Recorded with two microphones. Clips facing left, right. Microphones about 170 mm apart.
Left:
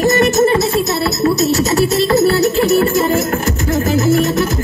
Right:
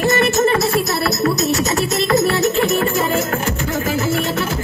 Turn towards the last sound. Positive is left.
turn(degrees=40)  # may be behind; listen again after turning